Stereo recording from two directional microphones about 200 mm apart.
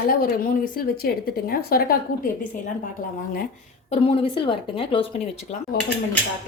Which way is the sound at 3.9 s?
25° left (ahead or behind).